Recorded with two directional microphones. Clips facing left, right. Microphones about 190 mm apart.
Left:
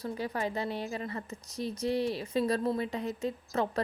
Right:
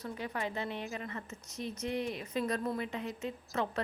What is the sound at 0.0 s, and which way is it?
A woman's voice, 35° left (ahead or behind).